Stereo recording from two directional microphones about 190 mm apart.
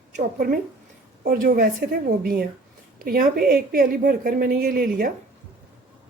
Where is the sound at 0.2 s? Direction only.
50° right (ahead or behind).